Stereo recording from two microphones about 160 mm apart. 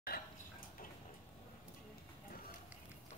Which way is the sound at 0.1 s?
70° left (ahead or behind).